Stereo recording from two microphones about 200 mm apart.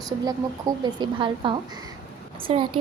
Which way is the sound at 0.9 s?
25° right (ahead or behind).